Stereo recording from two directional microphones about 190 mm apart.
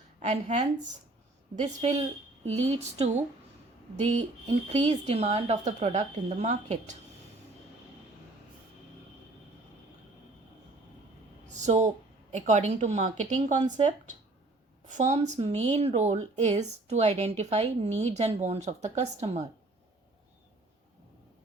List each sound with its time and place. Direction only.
0.2 s speech: 40° right (ahead or behind)
1.8 s speech: 35° right (ahead or behind)
11.6 s speech: 40° right (ahead or behind)
14.8 s a woman's voice: 40° right (ahead or behind)